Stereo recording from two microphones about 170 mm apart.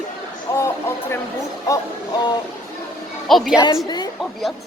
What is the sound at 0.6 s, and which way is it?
Speech, 15° left (ahead or behind).